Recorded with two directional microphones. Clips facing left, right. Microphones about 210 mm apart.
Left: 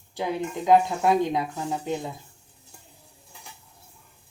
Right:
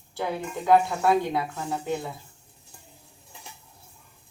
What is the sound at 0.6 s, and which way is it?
Speech, 15° left (ahead or behind).